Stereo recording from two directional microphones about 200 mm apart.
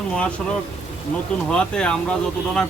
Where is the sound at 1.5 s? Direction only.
5° left (ahead or behind).